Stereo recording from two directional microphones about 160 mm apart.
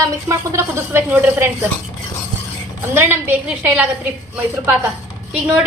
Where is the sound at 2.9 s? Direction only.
15° right (ahead or behind).